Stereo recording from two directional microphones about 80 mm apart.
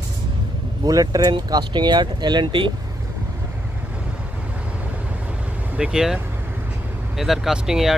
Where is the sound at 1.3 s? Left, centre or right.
Right.